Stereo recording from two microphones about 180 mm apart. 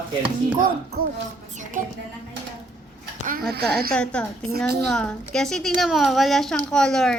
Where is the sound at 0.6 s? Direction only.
50° right (ahead or behind).